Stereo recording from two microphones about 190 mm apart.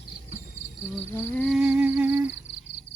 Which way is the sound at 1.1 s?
10° left (ahead or behind).